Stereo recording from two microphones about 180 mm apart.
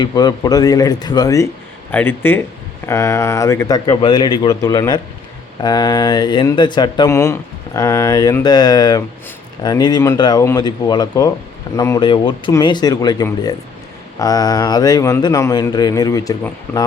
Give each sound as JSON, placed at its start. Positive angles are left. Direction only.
{"t": 0.0, "sound": "speech", "side_deg": 20}